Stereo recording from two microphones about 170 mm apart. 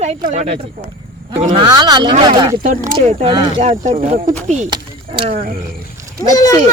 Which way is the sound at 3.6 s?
40° right (ahead or behind).